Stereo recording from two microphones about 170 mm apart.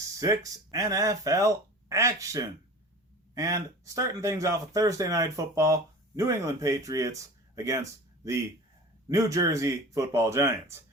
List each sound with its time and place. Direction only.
0.2 s speech: 20° right (ahead or behind)